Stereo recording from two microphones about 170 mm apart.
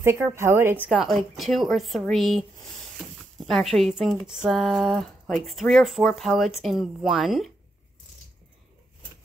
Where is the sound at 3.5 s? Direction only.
Centre (ahead or behind).